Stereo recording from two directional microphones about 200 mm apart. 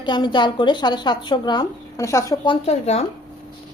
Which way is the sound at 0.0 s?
20° left (ahead or behind).